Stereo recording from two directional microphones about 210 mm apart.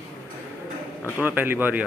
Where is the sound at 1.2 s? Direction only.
10° right (ahead or behind).